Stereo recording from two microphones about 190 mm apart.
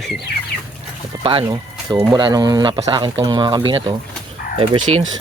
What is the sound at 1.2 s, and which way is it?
Speech, 25° right (ahead or behind).